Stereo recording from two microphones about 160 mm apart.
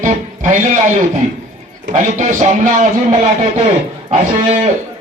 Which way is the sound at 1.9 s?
50° right (ahead or behind).